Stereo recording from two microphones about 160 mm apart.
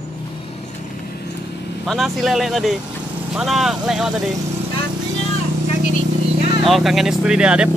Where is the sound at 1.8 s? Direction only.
Centre (ahead or behind).